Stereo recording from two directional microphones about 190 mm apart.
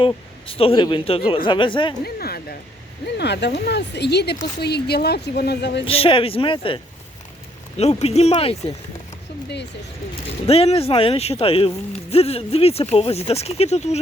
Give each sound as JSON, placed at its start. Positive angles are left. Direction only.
{"t": 0.0, "sound": "a man's voice", "side_deg": 30}
{"t": 2.0, "sound": "a woman's voice", "side_deg": 55}
{"t": 5.8, "sound": "a man's voice", "side_deg": 30}
{"t": 7.8, "sound": "speech", "side_deg": 35}
{"t": 10.4, "sound": "speech", "side_deg": 35}